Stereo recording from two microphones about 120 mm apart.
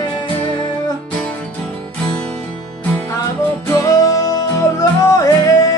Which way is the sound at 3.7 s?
25° left (ahead or behind).